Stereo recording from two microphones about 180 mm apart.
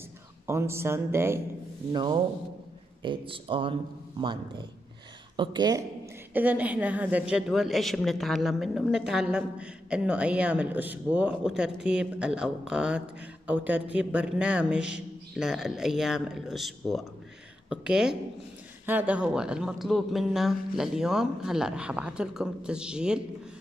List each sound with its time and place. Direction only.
0.5 s speech: 15° right (ahead or behind)
1.9 s speech: 25° right (ahead or behind)
6.3 s a woman's voice: 10° right (ahead or behind)